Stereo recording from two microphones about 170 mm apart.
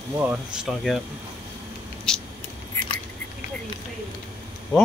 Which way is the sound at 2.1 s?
5° left (ahead or behind).